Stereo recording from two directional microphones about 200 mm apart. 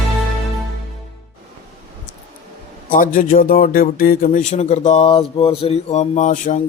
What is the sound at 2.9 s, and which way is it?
Speech, 40° left (ahead or behind).